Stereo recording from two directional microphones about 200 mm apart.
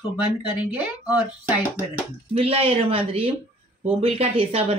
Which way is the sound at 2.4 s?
30° right (ahead or behind).